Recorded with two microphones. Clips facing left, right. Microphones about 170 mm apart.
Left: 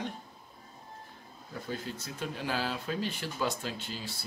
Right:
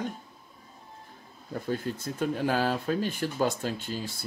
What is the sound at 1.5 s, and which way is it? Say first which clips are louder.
Speech: right 7 dB; 50° right (ahead or behind).